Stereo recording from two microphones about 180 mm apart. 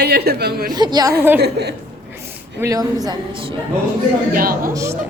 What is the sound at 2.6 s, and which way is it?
Speech, 20° right (ahead or behind).